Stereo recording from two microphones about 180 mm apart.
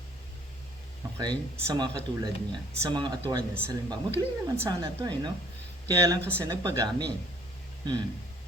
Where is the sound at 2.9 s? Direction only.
25° right (ahead or behind).